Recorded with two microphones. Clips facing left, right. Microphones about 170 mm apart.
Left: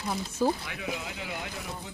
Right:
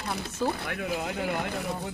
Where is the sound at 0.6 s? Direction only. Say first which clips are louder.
Right 5 dB; 55° right (ahead or behind).